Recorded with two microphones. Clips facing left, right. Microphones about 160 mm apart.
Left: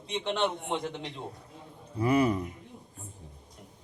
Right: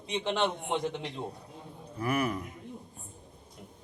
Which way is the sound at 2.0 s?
20° left (ahead or behind).